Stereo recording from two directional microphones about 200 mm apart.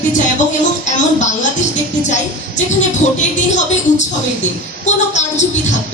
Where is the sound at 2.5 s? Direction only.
35° left (ahead or behind).